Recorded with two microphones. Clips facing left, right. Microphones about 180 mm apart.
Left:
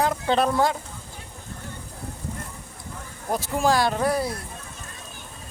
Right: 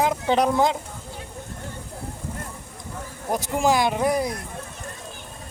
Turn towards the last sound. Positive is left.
turn(degrees=-15)  # may be behind; listen again after turning